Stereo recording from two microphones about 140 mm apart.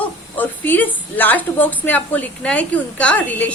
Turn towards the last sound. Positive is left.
turn(degrees=10)  # may be behind; listen again after turning